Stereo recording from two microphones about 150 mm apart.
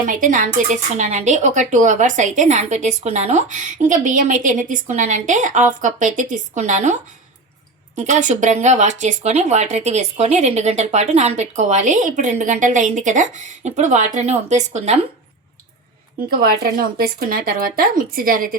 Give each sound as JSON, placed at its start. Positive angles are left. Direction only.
{"t": 0.0, "sound": "speech", "side_deg": -60}
{"t": 16.3, "sound": "speech", "side_deg": -80}